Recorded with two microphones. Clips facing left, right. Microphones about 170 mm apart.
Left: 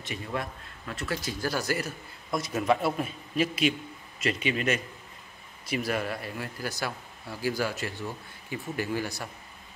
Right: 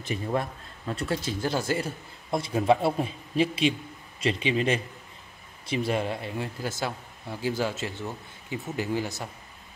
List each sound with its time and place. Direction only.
0.1 s speech: 30° right (ahead or behind)